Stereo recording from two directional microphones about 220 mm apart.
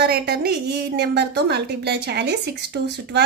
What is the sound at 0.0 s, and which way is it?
A woman's voice, 45° right (ahead or behind).